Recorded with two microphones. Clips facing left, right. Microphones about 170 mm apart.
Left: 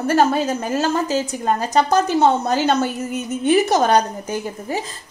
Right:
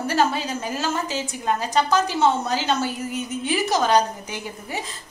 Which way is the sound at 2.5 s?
55° left (ahead or behind).